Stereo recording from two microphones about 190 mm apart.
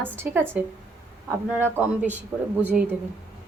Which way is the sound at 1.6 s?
10° right (ahead or behind).